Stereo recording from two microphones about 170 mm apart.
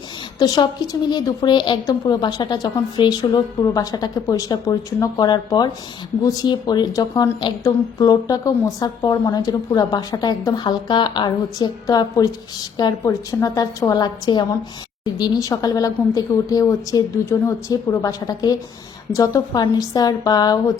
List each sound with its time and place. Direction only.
0.3 s a woman's voice: 25° left (ahead or behind)